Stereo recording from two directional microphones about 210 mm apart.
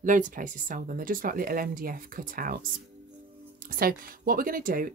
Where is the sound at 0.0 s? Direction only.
40° right (ahead or behind).